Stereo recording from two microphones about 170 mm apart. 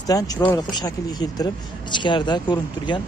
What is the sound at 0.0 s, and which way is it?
Speech, 20° left (ahead or behind).